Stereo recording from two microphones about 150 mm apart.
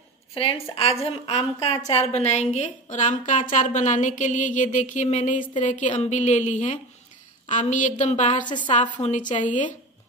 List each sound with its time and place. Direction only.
0.3 s a woman's voice: 40° left (ahead or behind)
8.5 s a woman's voice: 30° left (ahead or behind)
8.9 s a woman's voice: 55° left (ahead or behind)